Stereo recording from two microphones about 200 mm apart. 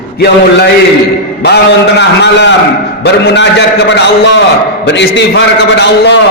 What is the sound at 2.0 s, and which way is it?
A man's voice, 60° left (ahead or behind).